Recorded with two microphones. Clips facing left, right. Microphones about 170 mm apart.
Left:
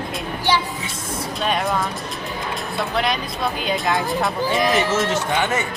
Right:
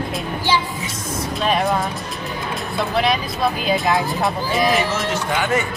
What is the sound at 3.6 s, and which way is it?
Speech, centre (ahead or behind).